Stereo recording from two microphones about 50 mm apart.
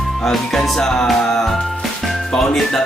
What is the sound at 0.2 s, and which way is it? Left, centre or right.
Music, centre.